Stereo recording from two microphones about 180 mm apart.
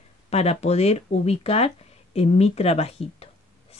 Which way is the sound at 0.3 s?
35° left (ahead or behind).